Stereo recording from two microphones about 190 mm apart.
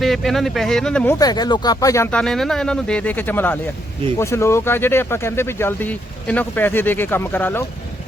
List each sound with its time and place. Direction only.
0.0 s speech: centre (ahead or behind)
1.2 s speech: 20° left (ahead or behind)
2.1 s speech: centre (ahead or behind)